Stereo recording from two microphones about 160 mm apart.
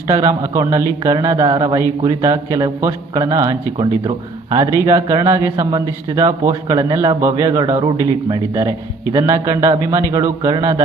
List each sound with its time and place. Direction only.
0.1 s speech: 20° right (ahead or behind)